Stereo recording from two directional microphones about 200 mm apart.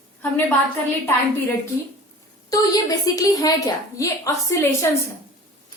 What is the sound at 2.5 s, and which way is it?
A woman's voice, 20° left (ahead or behind).